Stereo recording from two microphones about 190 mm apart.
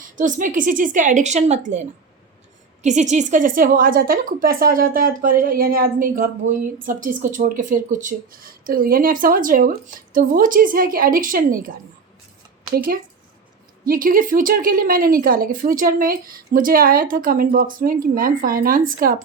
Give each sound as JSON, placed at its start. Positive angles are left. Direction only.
{"t": 0.2, "sound": "a woman's voice", "side_deg": -45}
{"t": 12.7, "sound": "a woman's voice", "side_deg": -50}